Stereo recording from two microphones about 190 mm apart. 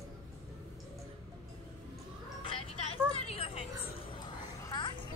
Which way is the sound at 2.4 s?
30° left (ahead or behind).